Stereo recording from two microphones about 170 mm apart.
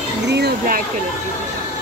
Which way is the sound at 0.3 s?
65° right (ahead or behind).